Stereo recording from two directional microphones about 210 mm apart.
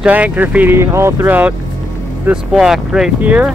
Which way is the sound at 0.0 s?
5° right (ahead or behind).